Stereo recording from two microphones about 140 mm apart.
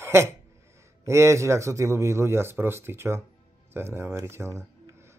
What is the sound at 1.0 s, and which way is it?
Speech, 20° right (ahead or behind).